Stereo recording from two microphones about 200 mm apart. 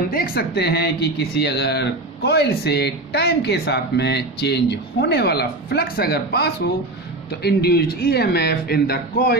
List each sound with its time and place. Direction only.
0.1 s speech: 50° left (ahead or behind)